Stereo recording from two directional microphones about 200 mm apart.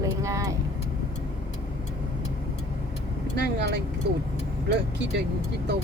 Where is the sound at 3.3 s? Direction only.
55° right (ahead or behind).